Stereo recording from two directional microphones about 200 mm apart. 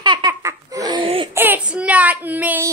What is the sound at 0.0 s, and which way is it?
Laughter, 20° right (ahead or behind).